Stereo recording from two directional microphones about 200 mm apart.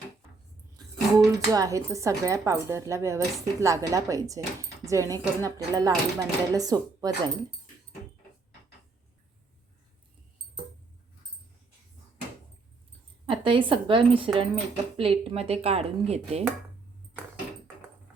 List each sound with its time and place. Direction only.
1.3 s speech: 15° right (ahead or behind)
13.2 s a woman's voice: 25° right (ahead or behind)